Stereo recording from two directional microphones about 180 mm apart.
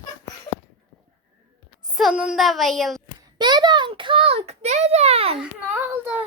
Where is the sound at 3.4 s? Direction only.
25° right (ahead or behind).